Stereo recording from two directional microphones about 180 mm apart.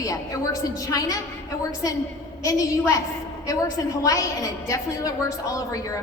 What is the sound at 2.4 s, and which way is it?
A woman's voice, 15° left (ahead or behind).